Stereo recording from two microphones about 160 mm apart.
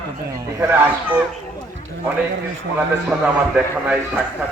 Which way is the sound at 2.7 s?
5° right (ahead or behind).